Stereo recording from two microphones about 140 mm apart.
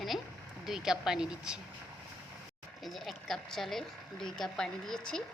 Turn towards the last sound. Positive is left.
turn(degrees=5)  # may be behind; listen again after turning